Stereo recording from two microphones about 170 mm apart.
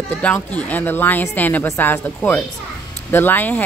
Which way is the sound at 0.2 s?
10° left (ahead or behind).